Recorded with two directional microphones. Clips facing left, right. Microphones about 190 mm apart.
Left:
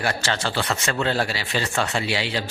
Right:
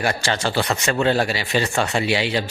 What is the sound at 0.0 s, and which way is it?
Speech, 15° right (ahead or behind).